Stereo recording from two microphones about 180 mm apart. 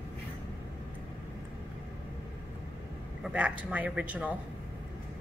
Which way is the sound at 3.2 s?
10° right (ahead or behind).